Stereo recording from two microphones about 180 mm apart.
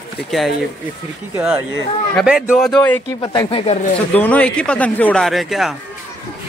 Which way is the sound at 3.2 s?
25° left (ahead or behind).